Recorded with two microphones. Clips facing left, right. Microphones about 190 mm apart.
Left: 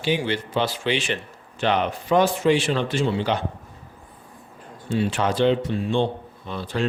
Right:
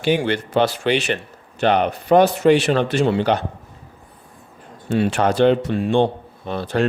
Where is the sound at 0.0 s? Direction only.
55° right (ahead or behind).